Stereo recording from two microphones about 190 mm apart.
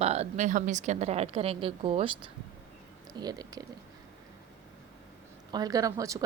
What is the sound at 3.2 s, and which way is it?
Speech, 20° right (ahead or behind).